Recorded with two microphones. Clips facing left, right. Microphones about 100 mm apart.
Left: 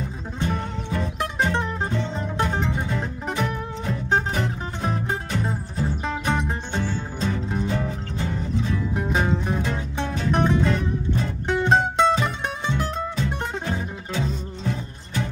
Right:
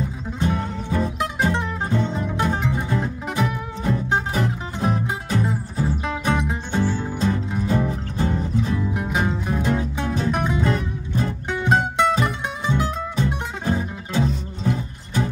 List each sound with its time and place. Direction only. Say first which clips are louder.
0.4 s music: right 3 dB; 5° right (ahead or behind)
7.7 s music: right 4 dB; 35° right (ahead or behind)
8.6 s music: right 1 dB; 5° right (ahead or behind)